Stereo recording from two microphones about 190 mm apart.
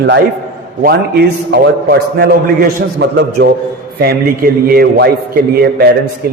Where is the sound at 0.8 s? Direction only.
55° right (ahead or behind).